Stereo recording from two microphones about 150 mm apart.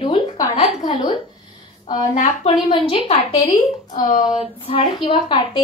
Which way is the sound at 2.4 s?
35° left (ahead or behind).